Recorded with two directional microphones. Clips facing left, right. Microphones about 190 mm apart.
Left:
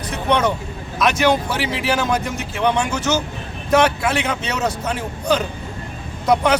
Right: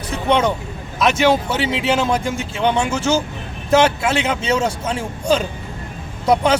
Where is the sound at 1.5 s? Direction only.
25° right (ahead or behind).